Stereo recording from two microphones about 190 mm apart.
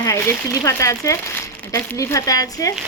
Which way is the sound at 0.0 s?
15° left (ahead or behind).